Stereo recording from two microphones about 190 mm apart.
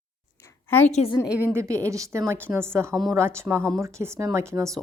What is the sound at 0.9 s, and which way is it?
Speech, 35° left (ahead or behind).